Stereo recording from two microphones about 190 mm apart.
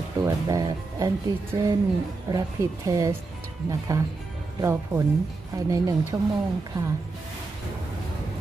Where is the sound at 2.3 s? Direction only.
20° right (ahead or behind).